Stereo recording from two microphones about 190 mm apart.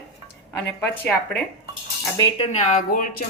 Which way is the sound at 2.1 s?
20° left (ahead or behind).